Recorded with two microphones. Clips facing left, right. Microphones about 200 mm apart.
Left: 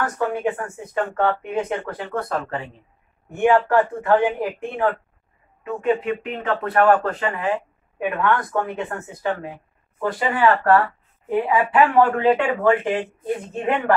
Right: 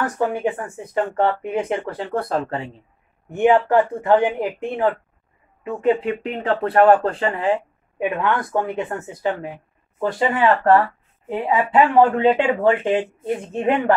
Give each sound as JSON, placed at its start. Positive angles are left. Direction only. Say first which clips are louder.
{"t": 0.0, "sound": "speech", "louder": "right 1 dB", "side_deg": -25}
{"t": 3.3, "sound": "speech", "louder": "right 2 dB", "side_deg": -20}
{"t": 6.0, "sound": "speech", "louder": "right 2 dB", "side_deg": -30}
{"t": 8.0, "sound": "speech", "louder": "even", "side_deg": -20}